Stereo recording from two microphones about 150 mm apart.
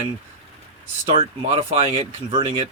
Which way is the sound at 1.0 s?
35° right (ahead or behind).